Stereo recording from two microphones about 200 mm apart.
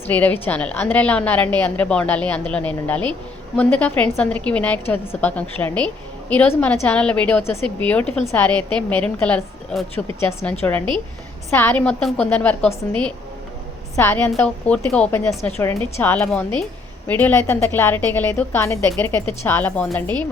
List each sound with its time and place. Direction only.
0.1 s a woman's voice: 10° left (ahead or behind)
10.8 s a woman's voice: 25° right (ahead or behind)
11.5 s a woman's voice: 10° left (ahead or behind)